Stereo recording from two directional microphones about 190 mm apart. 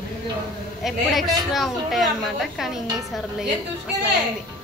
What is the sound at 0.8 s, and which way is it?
A woman's voice, centre (ahead or behind).